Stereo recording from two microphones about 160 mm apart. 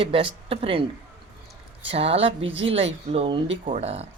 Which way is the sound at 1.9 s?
35° right (ahead or behind).